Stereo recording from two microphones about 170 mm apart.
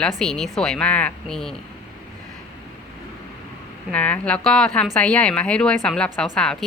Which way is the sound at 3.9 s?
10° left (ahead or behind).